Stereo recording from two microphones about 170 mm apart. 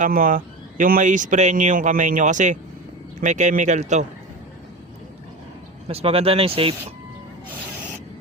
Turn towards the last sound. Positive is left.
turn(degrees=-35)  # may be behind; listen again after turning